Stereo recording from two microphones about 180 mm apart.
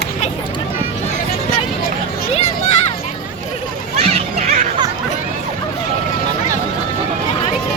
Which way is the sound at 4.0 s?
35° right (ahead or behind).